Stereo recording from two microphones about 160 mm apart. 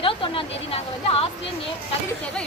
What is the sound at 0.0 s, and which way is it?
Speech, 35° left (ahead or behind).